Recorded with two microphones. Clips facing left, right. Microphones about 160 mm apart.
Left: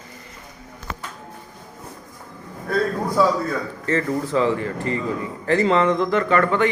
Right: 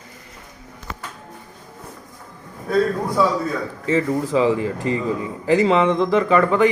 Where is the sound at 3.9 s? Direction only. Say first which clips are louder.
Right 2 dB; 10° right (ahead or behind).